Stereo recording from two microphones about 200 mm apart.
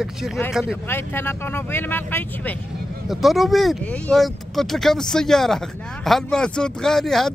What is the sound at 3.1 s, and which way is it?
Speech, centre (ahead or behind).